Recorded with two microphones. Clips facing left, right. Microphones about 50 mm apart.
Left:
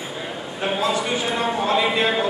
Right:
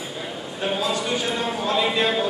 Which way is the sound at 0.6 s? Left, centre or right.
Centre.